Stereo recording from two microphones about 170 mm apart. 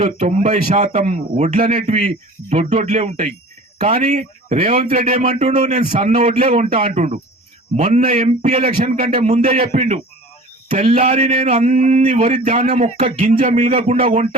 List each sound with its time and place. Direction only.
0.0 s a man's voice: 40° right (ahead or behind)
8.9 s a man's voice: 55° right (ahead or behind)
9.1 s a man's voice: 40° right (ahead or behind)
14.0 s a man's voice: 35° right (ahead or behind)